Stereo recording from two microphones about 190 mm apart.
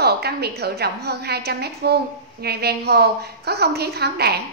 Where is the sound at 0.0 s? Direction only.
55° right (ahead or behind).